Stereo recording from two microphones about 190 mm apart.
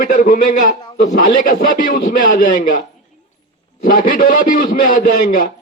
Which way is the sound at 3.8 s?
45° left (ahead or behind).